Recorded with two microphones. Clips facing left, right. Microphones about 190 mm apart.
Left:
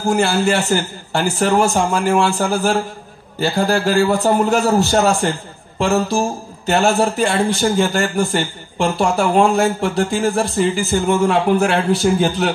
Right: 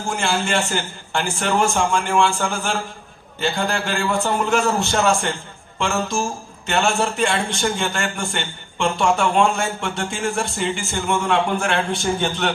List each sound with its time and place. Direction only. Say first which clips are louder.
0.0 s speech: left 7 dB; 40° left (ahead or behind)